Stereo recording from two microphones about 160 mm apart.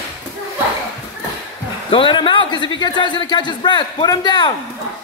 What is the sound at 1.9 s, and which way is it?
A man's voice, 30° left (ahead or behind).